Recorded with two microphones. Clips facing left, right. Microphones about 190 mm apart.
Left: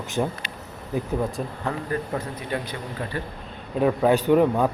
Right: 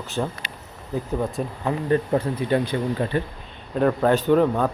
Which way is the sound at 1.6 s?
30° right (ahead or behind).